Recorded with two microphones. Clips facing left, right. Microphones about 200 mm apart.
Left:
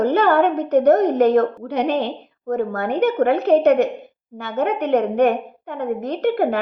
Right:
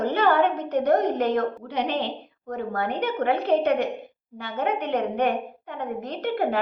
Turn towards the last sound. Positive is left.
turn(degrees=45)  # may be behind; listen again after turning